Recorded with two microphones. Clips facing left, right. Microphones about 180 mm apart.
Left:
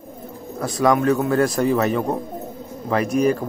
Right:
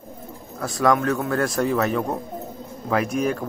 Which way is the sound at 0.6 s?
Centre (ahead or behind).